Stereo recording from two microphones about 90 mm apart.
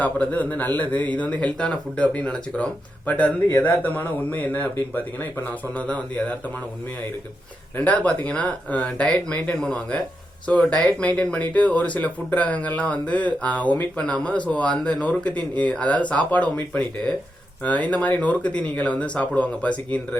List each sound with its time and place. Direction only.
0.0 s speech: 15° left (ahead or behind)
7.8 s speech: 15° left (ahead or behind)